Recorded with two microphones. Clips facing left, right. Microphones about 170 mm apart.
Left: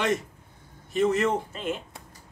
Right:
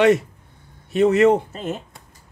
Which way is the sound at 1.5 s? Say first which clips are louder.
Right 3 dB; 40° right (ahead or behind).